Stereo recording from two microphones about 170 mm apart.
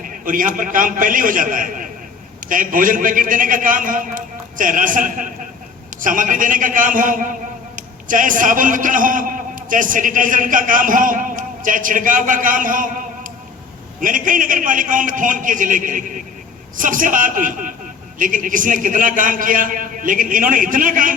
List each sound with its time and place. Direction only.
0.0 s a man's voice: 55° right (ahead or behind)